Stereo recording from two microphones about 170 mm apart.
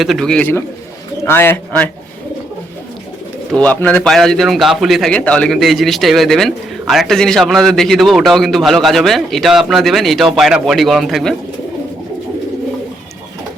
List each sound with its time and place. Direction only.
0.0 s a man's voice: centre (ahead or behind)
3.5 s a man's voice: 10° left (ahead or behind)